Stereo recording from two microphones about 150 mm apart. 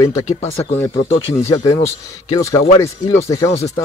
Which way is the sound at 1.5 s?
20° left (ahead or behind).